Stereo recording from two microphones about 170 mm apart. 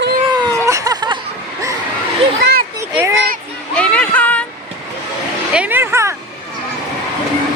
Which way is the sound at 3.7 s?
5° left (ahead or behind).